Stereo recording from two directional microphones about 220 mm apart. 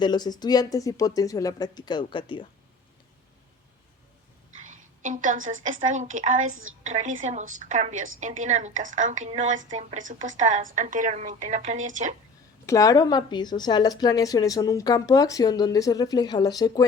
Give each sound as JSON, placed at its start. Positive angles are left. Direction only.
{"t": 0.0, "sound": "a woman's voice", "side_deg": 20}
{"t": 4.5, "sound": "a sound", "side_deg": -35}
{"t": 5.5, "sound": "a woman's voice", "side_deg": -60}
{"t": 5.8, "sound": "a woman's voice", "side_deg": -35}
{"t": 6.5, "sound": "a woman's voice", "side_deg": -65}
{"t": 6.8, "sound": "a woman's voice", "side_deg": -35}
{"t": 12.6, "sound": "a woman's voice", "side_deg": 15}